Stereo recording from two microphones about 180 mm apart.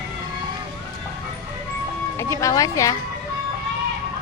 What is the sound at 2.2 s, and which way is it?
Music, 15° left (ahead or behind).